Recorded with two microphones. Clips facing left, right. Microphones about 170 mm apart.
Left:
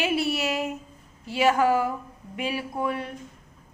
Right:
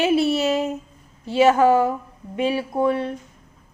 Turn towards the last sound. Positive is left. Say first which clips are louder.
# right 8 dB
turn(degrees=-30)  # may be behind; listen again after turning